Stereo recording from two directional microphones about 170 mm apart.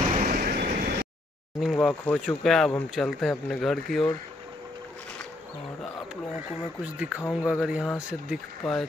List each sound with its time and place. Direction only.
0.1 s vehicle: 55° right (ahead or behind)
1.6 s speech: centre (ahead or behind)
6.3 s speech: 5° right (ahead or behind)